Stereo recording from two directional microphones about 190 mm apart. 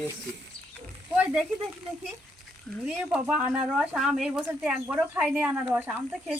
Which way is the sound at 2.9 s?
5° right (ahead or behind).